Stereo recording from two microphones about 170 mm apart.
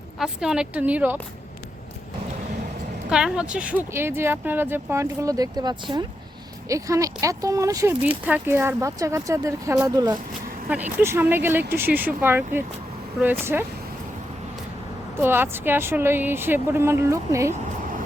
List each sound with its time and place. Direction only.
0.2 s speech: 5° right (ahead or behind)
3.1 s speech: 5° right (ahead or behind)
15.2 s speech: 10° right (ahead or behind)